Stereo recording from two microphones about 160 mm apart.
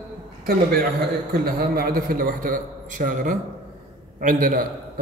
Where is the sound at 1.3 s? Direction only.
70° right (ahead or behind).